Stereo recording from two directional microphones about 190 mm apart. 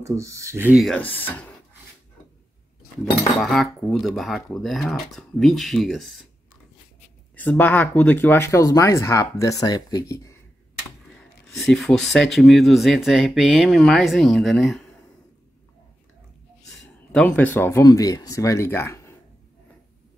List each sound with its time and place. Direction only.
0.0 s speech: 15° right (ahead or behind)
0.8 s speech: 10° left (ahead or behind)
3.3 s speech: centre (ahead or behind)
7.3 s speech: 10° left (ahead or behind)
11.1 s speech: centre (ahead or behind)
17.1 s speech: 5° left (ahead or behind)